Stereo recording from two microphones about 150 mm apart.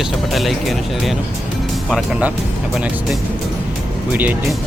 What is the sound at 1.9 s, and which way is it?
Speech, 10° right (ahead or behind).